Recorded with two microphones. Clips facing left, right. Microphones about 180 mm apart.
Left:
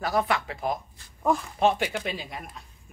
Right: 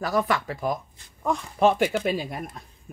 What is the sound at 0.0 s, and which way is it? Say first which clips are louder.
Speech: right 1 dB; 45° right (ahead or behind).